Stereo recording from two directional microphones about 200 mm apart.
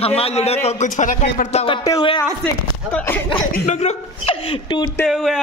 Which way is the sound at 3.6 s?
35° left (ahead or behind).